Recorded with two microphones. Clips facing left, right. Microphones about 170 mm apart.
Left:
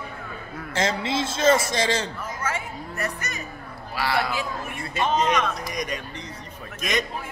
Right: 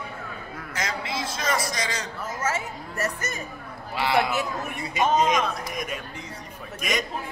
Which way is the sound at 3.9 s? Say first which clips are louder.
Right 2 dB; 20° right (ahead or behind).